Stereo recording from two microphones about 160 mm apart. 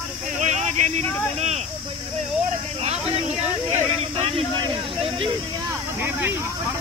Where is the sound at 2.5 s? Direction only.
40° right (ahead or behind).